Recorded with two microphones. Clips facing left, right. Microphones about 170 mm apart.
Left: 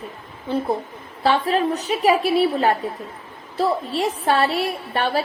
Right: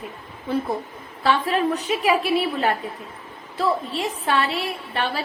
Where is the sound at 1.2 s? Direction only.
35° left (ahead or behind).